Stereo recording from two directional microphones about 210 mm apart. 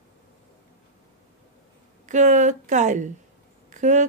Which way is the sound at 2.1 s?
35° right (ahead or behind).